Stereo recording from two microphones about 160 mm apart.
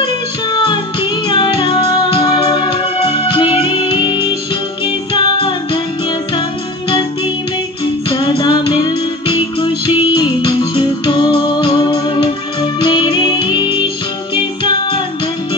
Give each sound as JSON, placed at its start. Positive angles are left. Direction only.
{"t": 1.2, "sound": "music", "side_deg": 30}
{"t": 7.8, "sound": "music", "side_deg": 30}